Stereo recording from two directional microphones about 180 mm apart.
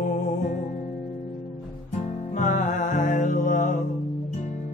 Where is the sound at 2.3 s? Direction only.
45° left (ahead or behind).